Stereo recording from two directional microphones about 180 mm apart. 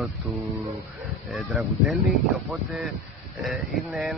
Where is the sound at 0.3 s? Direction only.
Centre (ahead or behind).